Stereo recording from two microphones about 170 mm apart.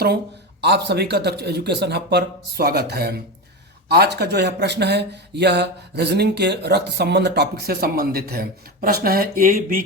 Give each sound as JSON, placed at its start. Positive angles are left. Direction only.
{"t": 0.6, "sound": "speech", "side_deg": -75}